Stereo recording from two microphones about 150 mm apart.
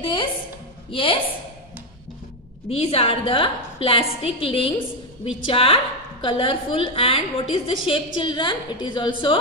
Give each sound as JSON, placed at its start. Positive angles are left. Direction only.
{"t": 0.0, "sound": "a sound", "side_deg": 35}
{"t": 0.9, "sound": "a woman's voice", "side_deg": 35}
{"t": 2.7, "sound": "a woman's voice", "side_deg": 40}